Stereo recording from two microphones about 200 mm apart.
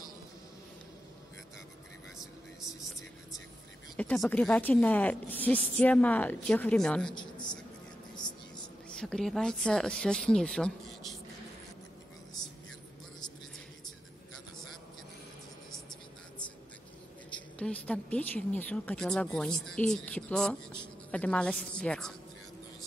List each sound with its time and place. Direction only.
2.1 s vehicle: centre (ahead or behind)
3.9 s speech: 5° left (ahead or behind)
8.2 s a sound: 20° left (ahead or behind)
8.9 s speech: 5° left (ahead or behind)
17.6 s speech: 5° left (ahead or behind)